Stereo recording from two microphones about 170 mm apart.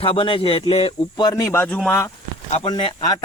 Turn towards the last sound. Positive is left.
turn(degrees=25)  # may be behind; listen again after turning